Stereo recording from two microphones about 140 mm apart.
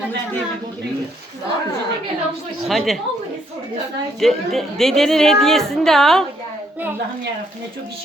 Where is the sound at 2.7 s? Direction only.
Centre (ahead or behind).